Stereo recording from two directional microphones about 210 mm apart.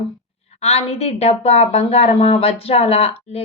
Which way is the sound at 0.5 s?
30° left (ahead or behind).